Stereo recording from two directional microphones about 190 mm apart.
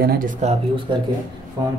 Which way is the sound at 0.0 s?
50° right (ahead or behind).